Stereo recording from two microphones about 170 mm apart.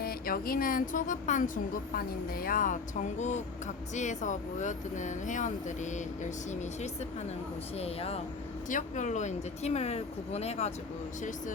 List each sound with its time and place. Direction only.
0.0 s speech: 60° left (ahead or behind)
3.9 s speech: 45° left (ahead or behind)
7.8 s speech: 35° left (ahead or behind)